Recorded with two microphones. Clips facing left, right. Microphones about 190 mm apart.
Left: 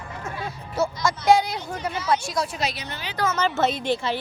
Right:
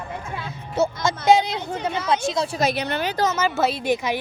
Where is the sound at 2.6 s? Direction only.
55° right (ahead or behind).